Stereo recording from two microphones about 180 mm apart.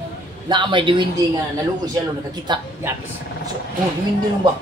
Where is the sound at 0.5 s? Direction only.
25° right (ahead or behind).